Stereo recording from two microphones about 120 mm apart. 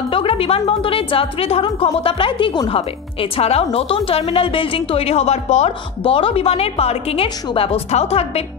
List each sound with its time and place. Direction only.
0.1 s a woman's voice: 50° left (ahead or behind)
2.7 s a woman's voice: 55° left (ahead or behind)